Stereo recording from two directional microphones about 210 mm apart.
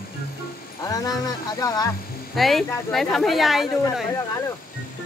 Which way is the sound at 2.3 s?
Centre (ahead or behind).